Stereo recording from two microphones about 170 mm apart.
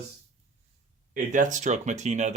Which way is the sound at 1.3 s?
45° right (ahead or behind).